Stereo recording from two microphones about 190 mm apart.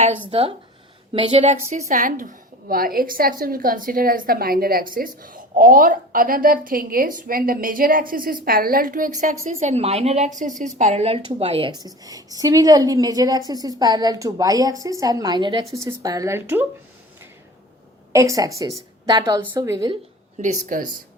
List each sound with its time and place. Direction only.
0.3 s a woman's voice: 30° right (ahead or behind); by 16.6 s 10° right (ahead or behind)
18.1 s a woman's voice: 15° right (ahead or behind)
20.4 s a woman's voice: 45° right (ahead or behind)